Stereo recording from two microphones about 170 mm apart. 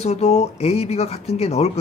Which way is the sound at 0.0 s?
40° left (ahead or behind).